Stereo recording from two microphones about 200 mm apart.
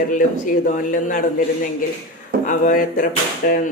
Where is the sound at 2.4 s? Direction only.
40° left (ahead or behind).